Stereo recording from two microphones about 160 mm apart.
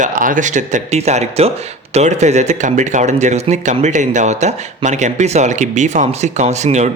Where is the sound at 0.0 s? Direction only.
55° right (ahead or behind).